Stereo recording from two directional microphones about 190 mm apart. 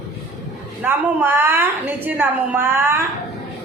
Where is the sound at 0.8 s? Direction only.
10° right (ahead or behind).